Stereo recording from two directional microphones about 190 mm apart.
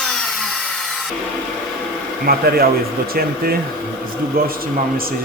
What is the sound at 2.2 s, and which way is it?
Speech, 50° right (ahead or behind).